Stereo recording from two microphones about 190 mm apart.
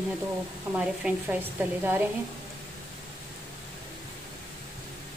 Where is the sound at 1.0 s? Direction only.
5° right (ahead or behind).